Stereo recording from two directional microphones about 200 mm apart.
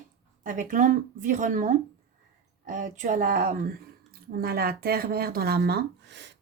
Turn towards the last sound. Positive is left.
turn(degrees=-60)  # may be behind; listen again after turning